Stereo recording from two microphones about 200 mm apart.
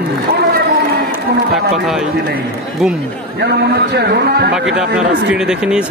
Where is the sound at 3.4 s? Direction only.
55° right (ahead or behind).